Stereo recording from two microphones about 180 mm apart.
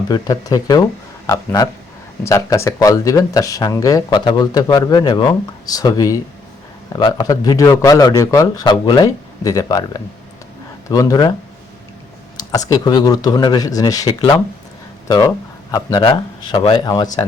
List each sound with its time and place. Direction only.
0.1 s speech: 20° left (ahead or behind)
12.4 s speech: 20° left (ahead or behind)